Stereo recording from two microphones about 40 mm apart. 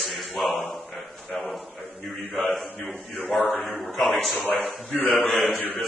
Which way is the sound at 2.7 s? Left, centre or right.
Left.